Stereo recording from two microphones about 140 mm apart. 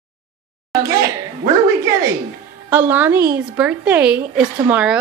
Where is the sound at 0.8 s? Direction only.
25° right (ahead or behind).